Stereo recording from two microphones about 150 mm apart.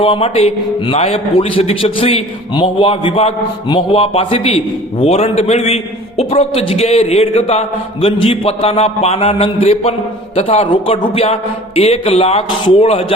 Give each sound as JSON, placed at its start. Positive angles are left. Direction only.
{"t": 0.0, "sound": "a man's voice", "side_deg": 40}